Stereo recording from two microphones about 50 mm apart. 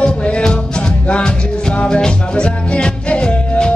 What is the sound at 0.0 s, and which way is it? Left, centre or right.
Music, left.